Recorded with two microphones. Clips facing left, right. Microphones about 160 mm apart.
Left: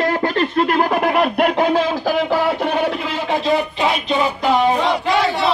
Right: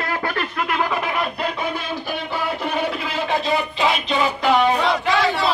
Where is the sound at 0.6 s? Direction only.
45° left (ahead or behind); by 2.6 s 90° left.